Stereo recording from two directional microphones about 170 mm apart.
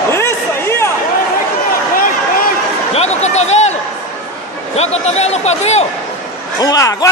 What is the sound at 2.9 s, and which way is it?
Speech, 40° left (ahead or behind).